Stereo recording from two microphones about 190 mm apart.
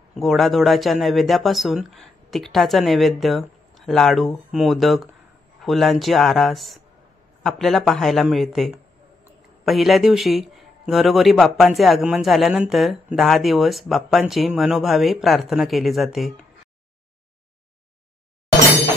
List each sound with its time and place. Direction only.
0.1 s speech: centre (ahead or behind)